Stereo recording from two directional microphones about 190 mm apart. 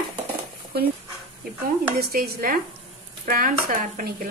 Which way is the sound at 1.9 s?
55° right (ahead or behind).